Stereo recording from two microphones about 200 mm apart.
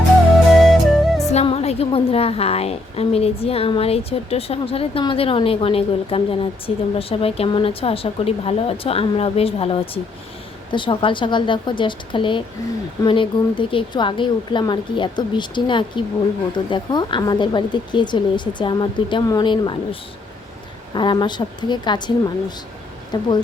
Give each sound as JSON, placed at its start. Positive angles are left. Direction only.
{"t": 0.6, "sound": "music", "side_deg": 0}
{"t": 1.3, "sound": "a woman's voice", "side_deg": 30}